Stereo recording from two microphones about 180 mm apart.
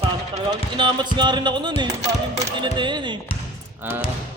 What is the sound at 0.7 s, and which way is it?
Speech, 25° right (ahead or behind).